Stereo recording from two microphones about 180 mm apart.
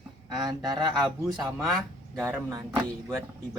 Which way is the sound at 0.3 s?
20° right (ahead or behind).